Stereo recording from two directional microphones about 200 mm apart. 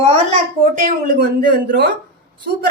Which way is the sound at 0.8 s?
45° right (ahead or behind).